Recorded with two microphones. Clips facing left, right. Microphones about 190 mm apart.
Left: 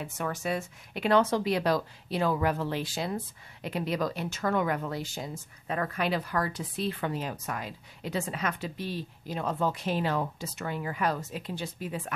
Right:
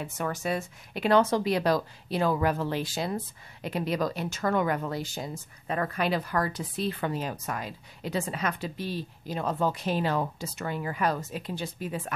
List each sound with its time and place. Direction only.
0.2 s speech: 40° right (ahead or behind)